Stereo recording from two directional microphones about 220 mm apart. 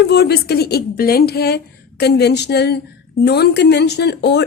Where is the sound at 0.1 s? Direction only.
45° left (ahead or behind).